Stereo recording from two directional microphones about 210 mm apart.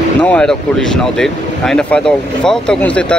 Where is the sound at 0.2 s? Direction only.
5° left (ahead or behind).